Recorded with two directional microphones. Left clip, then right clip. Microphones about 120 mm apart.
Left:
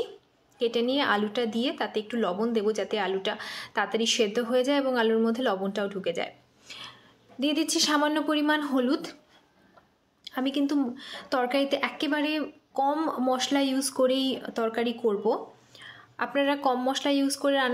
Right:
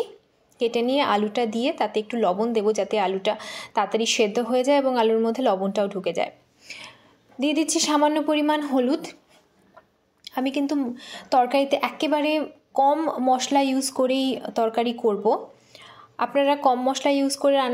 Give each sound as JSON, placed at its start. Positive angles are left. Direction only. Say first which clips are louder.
{"t": 0.6, "sound": "a woman's voice", "louder": "right 4 dB", "side_deg": -25}
{"t": 10.2, "sound": "a woman's voice", "louder": "right 3 dB", "side_deg": -20}